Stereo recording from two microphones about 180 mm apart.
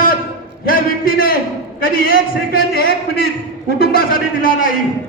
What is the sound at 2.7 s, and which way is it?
A man's voice, 60° left (ahead or behind).